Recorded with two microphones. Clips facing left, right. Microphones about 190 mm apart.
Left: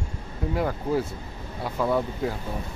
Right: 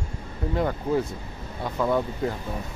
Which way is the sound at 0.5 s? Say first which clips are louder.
Right 1 dB; 5° left (ahead or behind).